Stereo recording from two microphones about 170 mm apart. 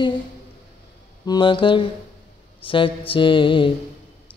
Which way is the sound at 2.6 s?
30° left (ahead or behind).